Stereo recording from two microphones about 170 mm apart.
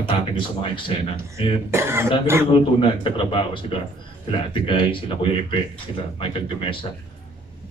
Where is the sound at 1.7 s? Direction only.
15° right (ahead or behind).